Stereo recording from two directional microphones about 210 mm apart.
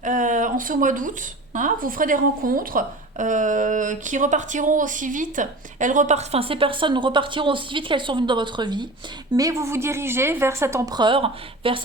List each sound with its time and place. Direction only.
0.0 s speech: 35° right (ahead or behind)